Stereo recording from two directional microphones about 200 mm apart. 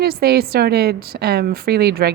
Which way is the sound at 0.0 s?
50° right (ahead or behind).